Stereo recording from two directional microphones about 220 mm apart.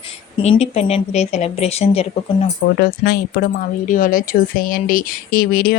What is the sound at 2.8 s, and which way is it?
Speech, 45° left (ahead or behind).